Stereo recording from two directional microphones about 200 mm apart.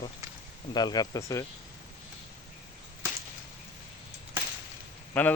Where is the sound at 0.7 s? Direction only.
20° left (ahead or behind).